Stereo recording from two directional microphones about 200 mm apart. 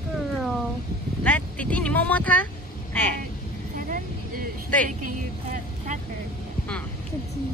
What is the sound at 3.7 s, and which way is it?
Vehicle, 45° right (ahead or behind).